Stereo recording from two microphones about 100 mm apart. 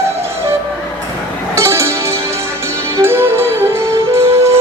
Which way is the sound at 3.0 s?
25° right (ahead or behind).